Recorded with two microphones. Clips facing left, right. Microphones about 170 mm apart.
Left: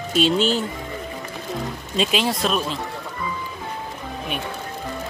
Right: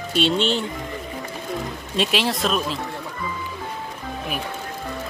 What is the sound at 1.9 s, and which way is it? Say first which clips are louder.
Speech: left 1 dB; centre (ahead or behind).